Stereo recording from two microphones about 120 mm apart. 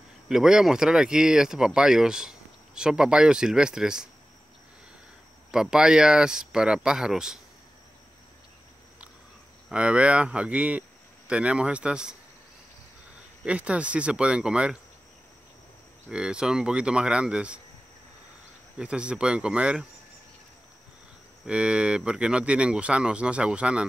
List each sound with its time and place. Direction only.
0.3 s speech: 5° right (ahead or behind)
5.5 s speech: 5° right (ahead or behind)
9.7 s speech: 10° right (ahead or behind)
13.5 s speech: 10° right (ahead or behind)
16.1 s speech: 5° right (ahead or behind)
18.8 s speech: 10° right (ahead or behind)
21.5 s speech: 10° right (ahead or behind)